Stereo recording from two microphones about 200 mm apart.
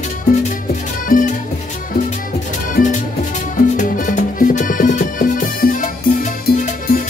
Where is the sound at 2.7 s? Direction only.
40° left (ahead or behind).